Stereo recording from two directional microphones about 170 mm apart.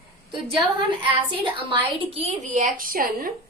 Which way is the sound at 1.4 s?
30° right (ahead or behind).